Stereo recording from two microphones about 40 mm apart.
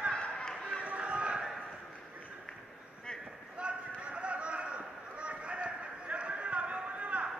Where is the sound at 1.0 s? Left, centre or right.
Right.